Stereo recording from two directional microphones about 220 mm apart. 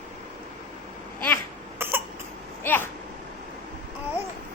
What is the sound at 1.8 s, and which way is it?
Cough, 10° right (ahead or behind).